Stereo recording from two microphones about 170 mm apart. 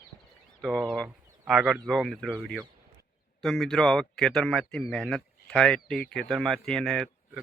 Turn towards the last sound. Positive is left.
turn(degrees=0)  # may be behind; listen again after turning